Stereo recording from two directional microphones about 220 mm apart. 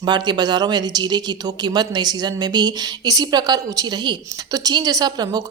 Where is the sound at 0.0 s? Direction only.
20° right (ahead or behind).